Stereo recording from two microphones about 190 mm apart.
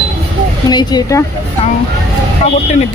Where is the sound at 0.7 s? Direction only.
20° left (ahead or behind).